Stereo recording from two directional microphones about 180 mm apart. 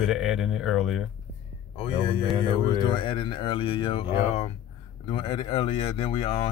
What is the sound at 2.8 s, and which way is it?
Speech, 30° left (ahead or behind).